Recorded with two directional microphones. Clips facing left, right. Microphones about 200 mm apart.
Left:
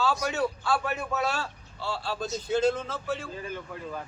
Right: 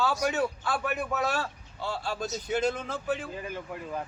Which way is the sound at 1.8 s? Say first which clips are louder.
Even; 15° right (ahead or behind).